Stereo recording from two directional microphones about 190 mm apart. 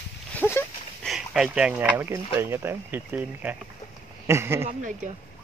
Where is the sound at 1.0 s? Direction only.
Centre (ahead or behind).